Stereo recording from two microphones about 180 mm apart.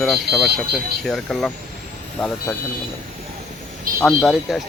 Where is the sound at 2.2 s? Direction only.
15° left (ahead or behind).